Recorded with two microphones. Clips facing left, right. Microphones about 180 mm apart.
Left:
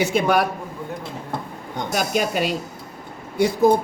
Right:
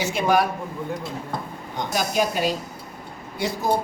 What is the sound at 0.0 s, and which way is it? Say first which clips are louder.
Speech: left 2 dB; 60° left (ahead or behind).